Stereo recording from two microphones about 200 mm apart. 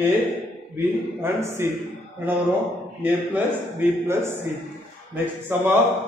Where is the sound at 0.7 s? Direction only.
10° right (ahead or behind).